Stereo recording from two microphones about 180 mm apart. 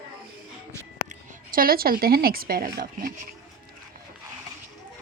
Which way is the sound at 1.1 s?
50° right (ahead or behind).